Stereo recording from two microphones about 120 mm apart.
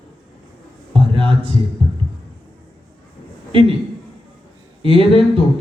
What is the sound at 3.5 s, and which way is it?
Speech, 45° right (ahead or behind).